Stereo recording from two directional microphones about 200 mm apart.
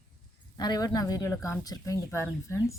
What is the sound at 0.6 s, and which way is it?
Speech, 20° left (ahead or behind).